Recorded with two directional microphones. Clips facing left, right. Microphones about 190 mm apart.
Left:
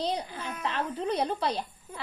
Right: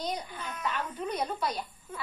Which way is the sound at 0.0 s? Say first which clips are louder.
Left 4 dB; 30° left (ahead or behind).